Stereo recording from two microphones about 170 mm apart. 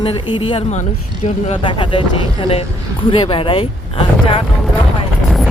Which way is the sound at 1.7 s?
30° left (ahead or behind).